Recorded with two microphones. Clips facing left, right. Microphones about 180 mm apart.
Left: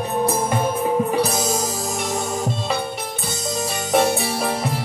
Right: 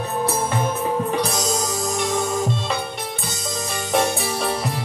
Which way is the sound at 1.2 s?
5° left (ahead or behind).